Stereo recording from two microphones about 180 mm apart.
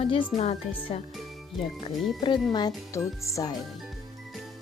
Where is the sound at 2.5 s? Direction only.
25° left (ahead or behind).